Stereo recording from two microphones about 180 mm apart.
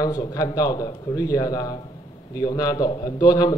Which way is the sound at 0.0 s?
20° left (ahead or behind).